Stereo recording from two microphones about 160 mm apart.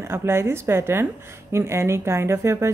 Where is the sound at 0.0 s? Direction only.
15° right (ahead or behind).